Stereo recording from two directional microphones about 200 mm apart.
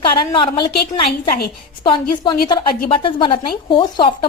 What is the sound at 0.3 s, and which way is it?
Speech, 25° left (ahead or behind).